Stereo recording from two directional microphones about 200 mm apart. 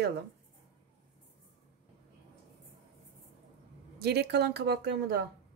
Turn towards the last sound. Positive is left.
turn(degrees=-55)  # may be behind; listen again after turning